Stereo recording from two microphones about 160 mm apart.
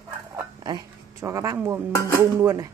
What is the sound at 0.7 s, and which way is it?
Speech, 20° right (ahead or behind).